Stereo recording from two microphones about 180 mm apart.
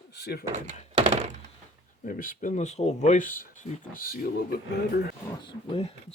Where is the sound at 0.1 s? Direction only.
65° left (ahead or behind).